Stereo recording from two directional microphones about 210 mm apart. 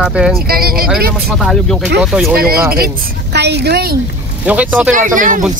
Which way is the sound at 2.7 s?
50° right (ahead or behind).